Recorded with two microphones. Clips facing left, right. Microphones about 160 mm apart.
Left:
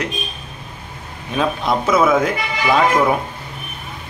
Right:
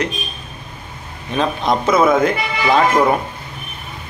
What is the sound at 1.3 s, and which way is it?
A man's voice, 5° left (ahead or behind).